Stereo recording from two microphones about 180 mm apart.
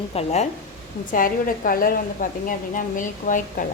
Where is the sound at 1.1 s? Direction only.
50° left (ahead or behind).